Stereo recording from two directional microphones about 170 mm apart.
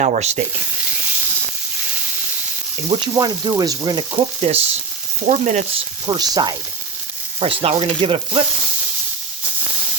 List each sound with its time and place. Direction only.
0.0 s sizzle: 40° right (ahead or behind)
2.9 s frying: 25° right (ahead or behind); by 5.6 s 45° right (ahead or behind)
6.1 s frying: 25° right (ahead or behind)
7.3 s sizzle: 30° right (ahead or behind)